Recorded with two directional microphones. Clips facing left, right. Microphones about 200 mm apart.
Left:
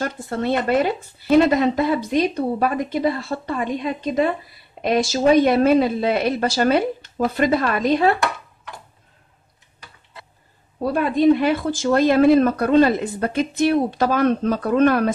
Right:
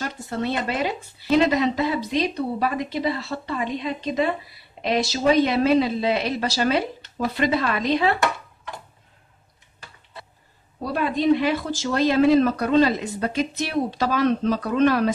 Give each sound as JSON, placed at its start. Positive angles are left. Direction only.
{"t": 0.0, "sound": "speech", "side_deg": 50}
{"t": 10.9, "sound": "speech", "side_deg": 50}